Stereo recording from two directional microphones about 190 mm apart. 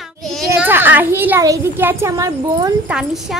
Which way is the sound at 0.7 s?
10° right (ahead or behind).